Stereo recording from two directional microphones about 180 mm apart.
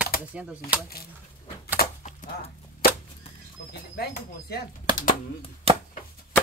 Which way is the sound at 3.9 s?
60° left (ahead or behind).